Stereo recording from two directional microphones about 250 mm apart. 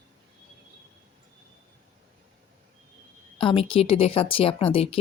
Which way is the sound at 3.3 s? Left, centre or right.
Left.